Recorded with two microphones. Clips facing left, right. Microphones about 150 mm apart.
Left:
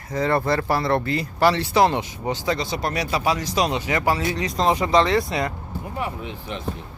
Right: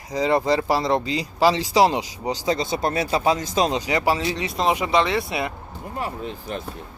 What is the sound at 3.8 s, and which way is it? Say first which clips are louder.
Speech: right 1 dB; 15° right (ahead or behind).